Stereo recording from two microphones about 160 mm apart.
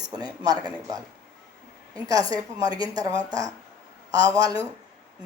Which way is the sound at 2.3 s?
25° right (ahead or behind).